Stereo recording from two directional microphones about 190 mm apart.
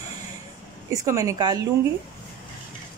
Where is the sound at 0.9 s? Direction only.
15° right (ahead or behind).